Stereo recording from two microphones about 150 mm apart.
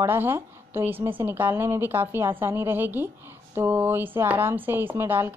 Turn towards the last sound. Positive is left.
turn(degrees=-15)  # may be behind; listen again after turning